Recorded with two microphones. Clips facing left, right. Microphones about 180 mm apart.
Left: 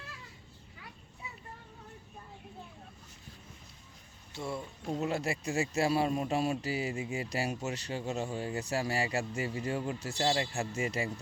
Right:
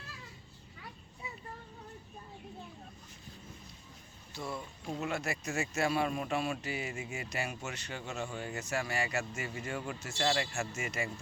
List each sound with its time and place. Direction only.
4.3 s speech: 25° left (ahead or behind)